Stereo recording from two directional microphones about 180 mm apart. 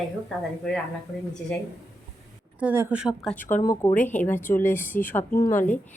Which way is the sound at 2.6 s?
10° right (ahead or behind).